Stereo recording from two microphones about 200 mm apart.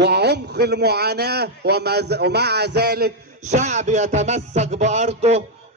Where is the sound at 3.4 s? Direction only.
35° right (ahead or behind).